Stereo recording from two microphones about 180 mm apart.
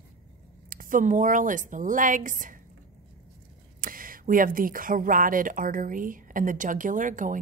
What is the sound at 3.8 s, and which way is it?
Speech, 50° right (ahead or behind).